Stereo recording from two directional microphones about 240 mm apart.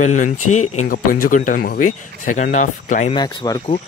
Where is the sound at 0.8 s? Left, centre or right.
Left.